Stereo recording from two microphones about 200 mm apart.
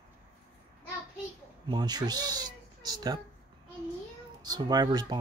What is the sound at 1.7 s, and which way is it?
Speech, 20° right (ahead or behind).